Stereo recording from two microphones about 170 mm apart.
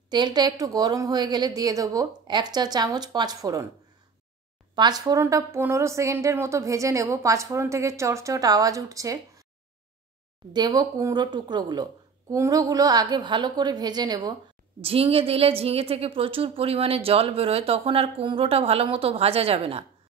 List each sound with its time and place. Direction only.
0.1 s speech: 25° right (ahead or behind)
4.7 s speech: 25° right (ahead or behind)
10.5 s a woman's voice: 25° right (ahead or behind)